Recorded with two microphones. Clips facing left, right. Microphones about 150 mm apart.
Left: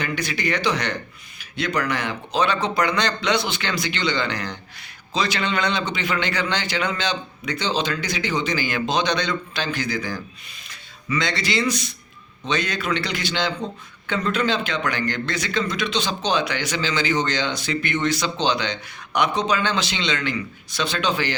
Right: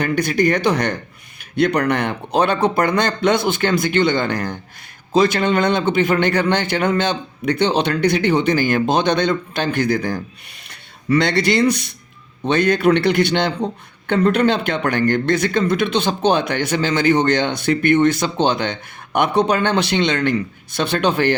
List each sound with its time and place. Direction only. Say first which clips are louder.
0.0 s a man's voice: right 9 dB; 50° right (ahead or behind)